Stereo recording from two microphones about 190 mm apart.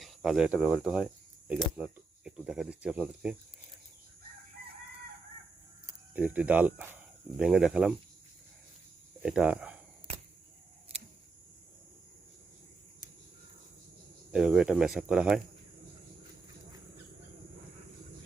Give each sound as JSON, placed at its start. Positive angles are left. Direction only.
{"t": 0.0, "sound": "speech", "side_deg": 0}
{"t": 5.8, "sound": "speech", "side_deg": -10}
{"t": 9.2, "sound": "speech", "side_deg": -5}
{"t": 10.9, "sound": "a sound", "side_deg": -30}
{"t": 14.3, "sound": "speech", "side_deg": -5}